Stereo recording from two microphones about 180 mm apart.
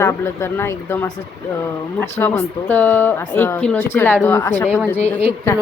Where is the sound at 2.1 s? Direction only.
10° left (ahead or behind).